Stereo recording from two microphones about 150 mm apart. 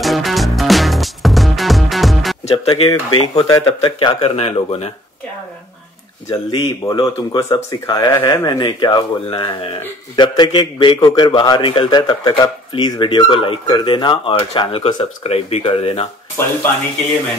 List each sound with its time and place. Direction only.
0.0 s music: centre (ahead or behind)
2.4 s speech: 45° left (ahead or behind)
2.9 s speech: 30° left (ahead or behind)
3.6 s a man's voice: 40° left (ahead or behind)
6.3 s a man's voice: 30° left (ahead or behind)
16.4 s speech: 15° left (ahead or behind)